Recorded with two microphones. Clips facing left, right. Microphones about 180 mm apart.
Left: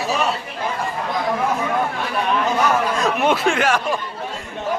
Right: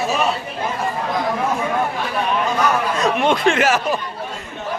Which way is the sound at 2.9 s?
5° left (ahead or behind).